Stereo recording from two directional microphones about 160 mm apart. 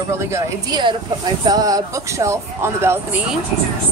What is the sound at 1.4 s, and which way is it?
Speech, 20° right (ahead or behind).